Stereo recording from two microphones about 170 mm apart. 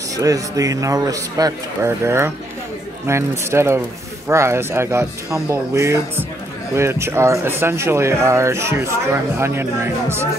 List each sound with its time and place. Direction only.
0.1 s speech: 20° right (ahead or behind)